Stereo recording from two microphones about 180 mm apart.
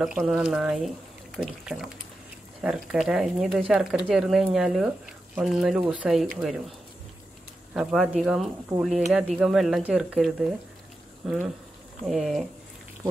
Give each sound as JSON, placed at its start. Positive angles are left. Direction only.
{"t": 0.0, "sound": "speech", "side_deg": 0}
{"t": 7.7, "sound": "speech", "side_deg": -5}
{"t": 8.7, "sound": "speech", "side_deg": -20}
{"t": 9.1, "sound": "speech", "side_deg": 0}